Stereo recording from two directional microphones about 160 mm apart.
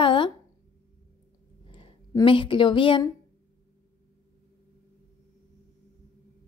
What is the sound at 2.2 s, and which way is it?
Speech, 30° left (ahead or behind).